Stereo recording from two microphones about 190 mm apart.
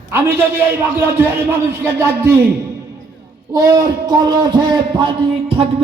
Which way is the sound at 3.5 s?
20° right (ahead or behind).